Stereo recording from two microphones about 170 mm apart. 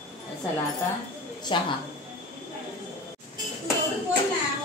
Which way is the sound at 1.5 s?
30° left (ahead or behind).